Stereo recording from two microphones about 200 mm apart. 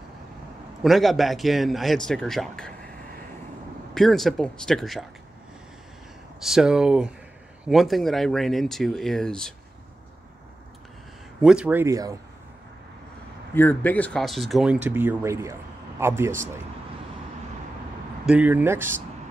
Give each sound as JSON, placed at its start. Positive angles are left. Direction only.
{"t": 0.8, "sound": "speech", "side_deg": 0}
{"t": 3.9, "sound": "speech", "side_deg": 0}
{"t": 6.4, "sound": "speech", "side_deg": -5}
{"t": 11.4, "sound": "speech", "side_deg": -5}
{"t": 13.6, "sound": "speech", "side_deg": 10}
{"t": 18.2, "sound": "speech", "side_deg": -5}